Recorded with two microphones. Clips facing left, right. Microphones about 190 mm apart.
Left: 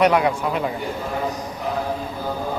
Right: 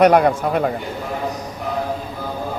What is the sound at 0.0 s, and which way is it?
Speech, 50° right (ahead or behind).